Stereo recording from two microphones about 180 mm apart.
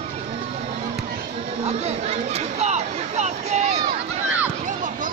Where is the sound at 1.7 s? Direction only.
35° right (ahead or behind).